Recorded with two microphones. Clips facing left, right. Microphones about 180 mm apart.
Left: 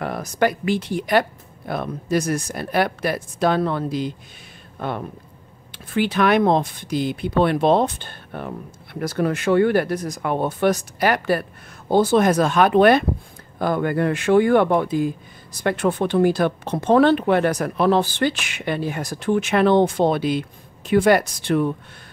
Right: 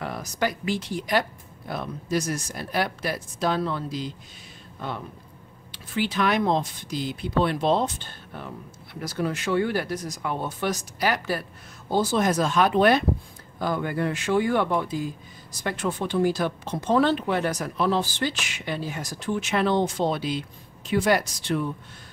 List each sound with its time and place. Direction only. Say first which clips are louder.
0.0 s speech: left 6 dB; 55° left (ahead or behind)